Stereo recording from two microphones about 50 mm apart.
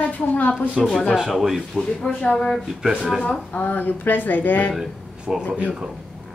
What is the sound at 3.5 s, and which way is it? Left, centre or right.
Speech, left.